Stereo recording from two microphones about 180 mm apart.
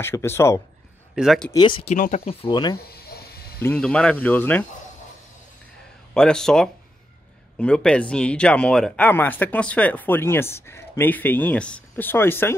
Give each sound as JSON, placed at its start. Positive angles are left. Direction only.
{"t": 0.0, "sound": "speech", "side_deg": 15}
{"t": 1.1, "sound": "speech", "side_deg": 0}
{"t": 1.5, "sound": "speech", "side_deg": 25}
{"t": 2.0, "sound": "speech", "side_deg": 40}
{"t": 2.5, "sound": "speech", "side_deg": 25}
{"t": 2.9, "sound": "a sound", "side_deg": 60}
{"t": 3.6, "sound": "speech", "side_deg": 5}
{"t": 6.1, "sound": "speech", "side_deg": 5}